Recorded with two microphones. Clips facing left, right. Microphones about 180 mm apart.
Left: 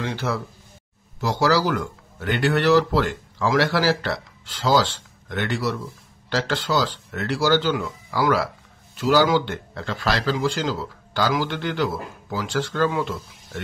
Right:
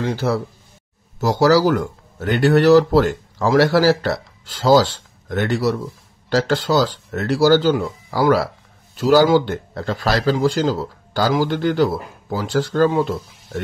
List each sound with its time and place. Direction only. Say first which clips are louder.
0.0 s a man's voice: right 6 dB; 35° right (ahead or behind)